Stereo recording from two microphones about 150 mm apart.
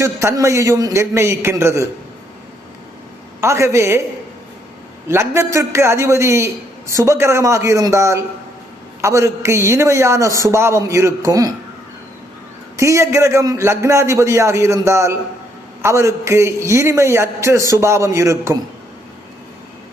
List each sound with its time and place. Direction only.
0.0 s a man's voice: 20° right (ahead or behind)
3.4 s a man's voice: 20° right (ahead or behind)
5.0 s a man's voice: 15° right (ahead or behind)
12.7 s a man's voice: 20° right (ahead or behind)